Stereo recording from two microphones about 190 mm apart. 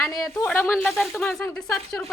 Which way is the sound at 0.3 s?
5° left (ahead or behind).